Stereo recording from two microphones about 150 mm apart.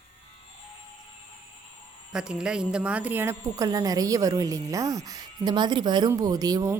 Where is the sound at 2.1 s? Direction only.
5° right (ahead or behind).